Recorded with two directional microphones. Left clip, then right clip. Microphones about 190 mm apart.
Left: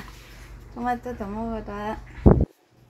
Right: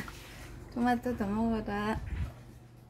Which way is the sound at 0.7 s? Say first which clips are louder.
Left 3 dB; 5° left (ahead or behind).